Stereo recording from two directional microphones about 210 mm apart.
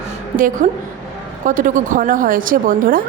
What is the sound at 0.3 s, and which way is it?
A woman's voice, 40° right (ahead or behind).